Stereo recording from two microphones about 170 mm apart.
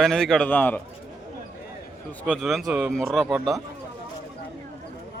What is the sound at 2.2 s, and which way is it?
A man's voice, 5° right (ahead or behind).